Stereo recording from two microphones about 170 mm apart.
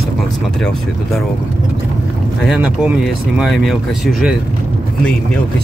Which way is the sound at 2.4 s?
5° right (ahead or behind).